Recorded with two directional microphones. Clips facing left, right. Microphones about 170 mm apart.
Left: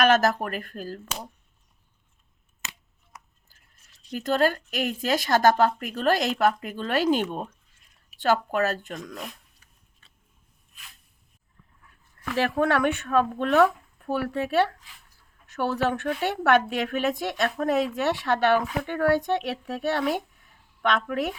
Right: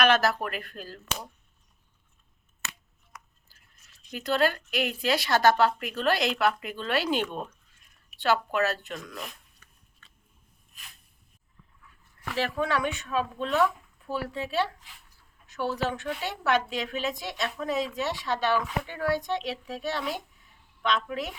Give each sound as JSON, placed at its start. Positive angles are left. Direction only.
{"t": 0.0, "sound": "a woman's voice", "side_deg": 45}
{"t": 4.1, "sound": "a woman's voice", "side_deg": 45}
{"t": 8.5, "sound": "a woman's voice", "side_deg": 45}
{"t": 12.4, "sound": "speech", "side_deg": 55}